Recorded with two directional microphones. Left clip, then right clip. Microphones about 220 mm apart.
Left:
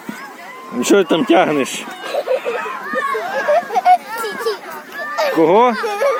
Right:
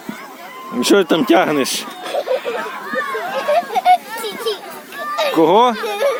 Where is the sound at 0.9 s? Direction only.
10° right (ahead or behind).